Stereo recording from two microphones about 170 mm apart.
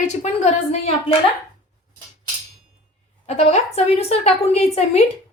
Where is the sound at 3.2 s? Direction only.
40° left (ahead or behind).